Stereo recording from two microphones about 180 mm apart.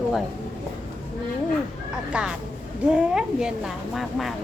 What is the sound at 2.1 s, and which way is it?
A child's voice, 5° right (ahead or behind).